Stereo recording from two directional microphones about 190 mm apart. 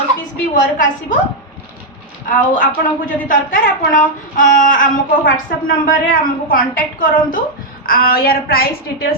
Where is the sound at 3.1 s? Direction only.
45° left (ahead or behind).